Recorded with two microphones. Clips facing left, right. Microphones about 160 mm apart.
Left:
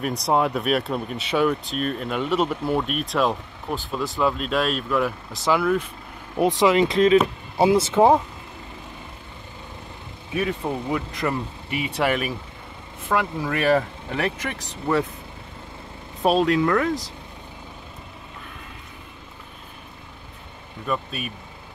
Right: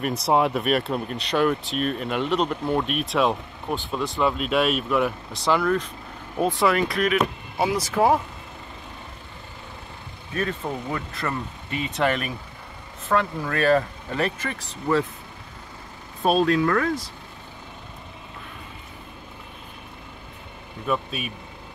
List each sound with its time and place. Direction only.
0.0 s speech: 5° right (ahead or behind)
6.6 s speech: 20° left (ahead or behind)
10.3 s speech: 10° left (ahead or behind)
16.2 s speech: 20° left (ahead or behind)
20.8 s speech: centre (ahead or behind)